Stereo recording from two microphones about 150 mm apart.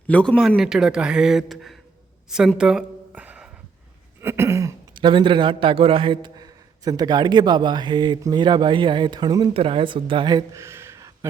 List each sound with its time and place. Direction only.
0.1 s a man's voice: 5° left (ahead or behind); by 3.5 s 10° right (ahead or behind)
4.2 s a sound: 15° right (ahead or behind)
4.9 s a man's voice: 30° right (ahead or behind)